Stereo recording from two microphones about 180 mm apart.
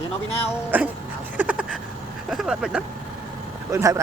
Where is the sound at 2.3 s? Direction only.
5° right (ahead or behind).